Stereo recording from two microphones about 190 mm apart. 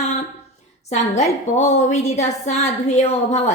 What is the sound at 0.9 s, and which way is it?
A woman's voice, 35° left (ahead or behind).